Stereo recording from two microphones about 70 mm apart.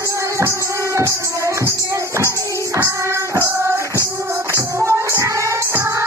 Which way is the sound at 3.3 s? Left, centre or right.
Right.